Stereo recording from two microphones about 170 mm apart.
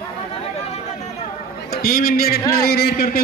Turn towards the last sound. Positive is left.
turn(degrees=65)  # may be behind; listen again after turning